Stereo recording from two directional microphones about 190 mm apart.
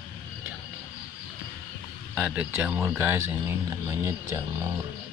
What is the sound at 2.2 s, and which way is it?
Speech, 5° right (ahead or behind).